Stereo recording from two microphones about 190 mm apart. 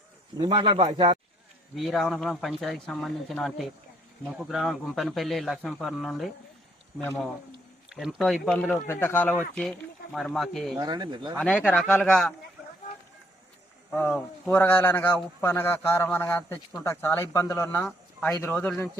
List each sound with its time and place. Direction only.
0.3 s speech: 25° right (ahead or behind)
1.7 s speech: centre (ahead or behind)
7.9 s speech: centre (ahead or behind)
10.8 s speech: 20° right (ahead or behind)
11.3 s speech: 5° left (ahead or behind)
13.9 s speech: 5° left (ahead or behind)